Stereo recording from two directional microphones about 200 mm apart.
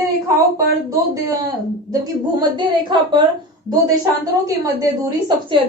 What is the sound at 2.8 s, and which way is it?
Speech, 25° right (ahead or behind).